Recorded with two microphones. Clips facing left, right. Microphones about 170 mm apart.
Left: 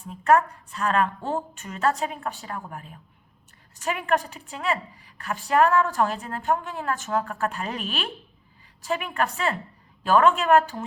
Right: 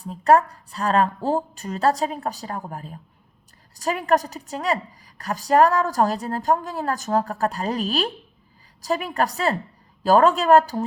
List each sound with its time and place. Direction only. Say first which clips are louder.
0.0 s a woman's voice: right 3 dB; 35° right (ahead or behind)